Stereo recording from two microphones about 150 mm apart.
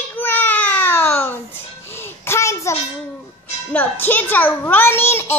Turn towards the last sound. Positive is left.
turn(degrees=15)  # may be behind; listen again after turning